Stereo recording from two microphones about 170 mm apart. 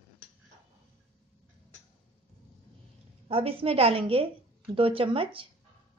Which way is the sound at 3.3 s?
35° right (ahead or behind).